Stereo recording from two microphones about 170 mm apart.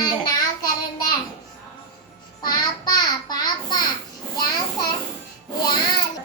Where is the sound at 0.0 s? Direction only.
25° left (ahead or behind).